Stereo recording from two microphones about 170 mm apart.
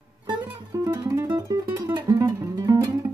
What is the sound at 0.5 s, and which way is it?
Music, 20° right (ahead or behind).